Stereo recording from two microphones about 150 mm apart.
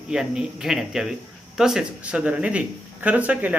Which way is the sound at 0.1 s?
5° right (ahead or behind).